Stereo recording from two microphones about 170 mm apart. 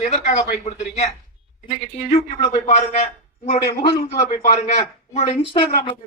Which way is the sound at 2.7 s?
40° left (ahead or behind).